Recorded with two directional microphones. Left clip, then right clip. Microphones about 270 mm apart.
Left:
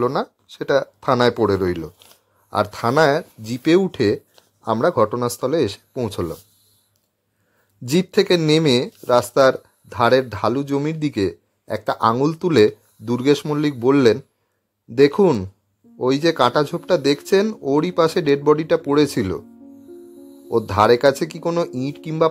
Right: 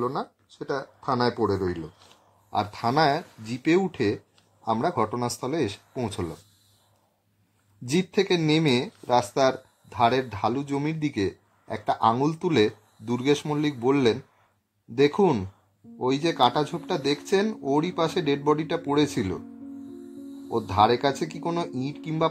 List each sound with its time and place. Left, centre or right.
0.0 s speech: left; by 6.3 s centre
7.8 s speech: left
20.5 s speech: left